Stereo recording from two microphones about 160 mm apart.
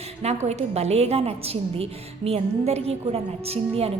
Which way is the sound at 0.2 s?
40° right (ahead or behind).